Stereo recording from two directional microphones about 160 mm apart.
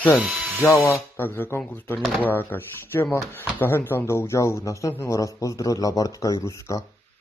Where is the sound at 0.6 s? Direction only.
15° left (ahead or behind).